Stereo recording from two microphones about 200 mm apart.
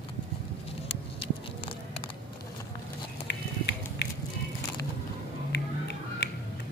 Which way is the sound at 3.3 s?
60° left (ahead or behind).